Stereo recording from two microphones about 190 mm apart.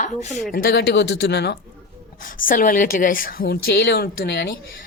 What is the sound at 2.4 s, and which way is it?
A woman's voice, 45° left (ahead or behind).